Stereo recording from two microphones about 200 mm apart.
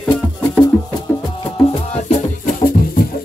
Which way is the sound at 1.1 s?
10° left (ahead or behind).